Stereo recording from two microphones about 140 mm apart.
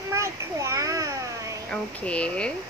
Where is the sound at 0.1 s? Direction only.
20° right (ahead or behind).